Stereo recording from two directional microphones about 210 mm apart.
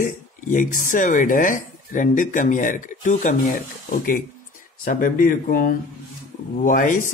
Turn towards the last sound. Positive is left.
turn(degrees=40)  # may be behind; listen again after turning